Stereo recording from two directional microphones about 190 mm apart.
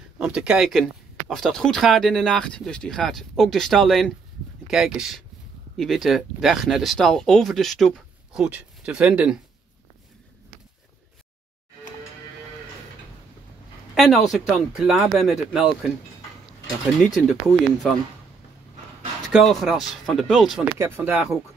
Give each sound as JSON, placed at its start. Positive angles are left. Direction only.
{"t": 0.2, "sound": "speech", "side_deg": -5}
{"t": 13.9, "sound": "speech", "side_deg": 0}
{"t": 17.0, "sound": "speech", "side_deg": 0}
{"t": 19.3, "sound": "speech", "side_deg": 0}
{"t": 20.8, "sound": "speech", "side_deg": -10}